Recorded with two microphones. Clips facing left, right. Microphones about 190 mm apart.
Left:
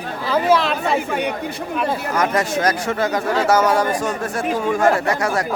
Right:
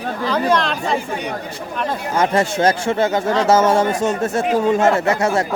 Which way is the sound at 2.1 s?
25° right (ahead or behind).